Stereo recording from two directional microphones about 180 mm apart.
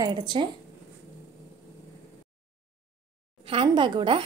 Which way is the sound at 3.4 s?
30° right (ahead or behind).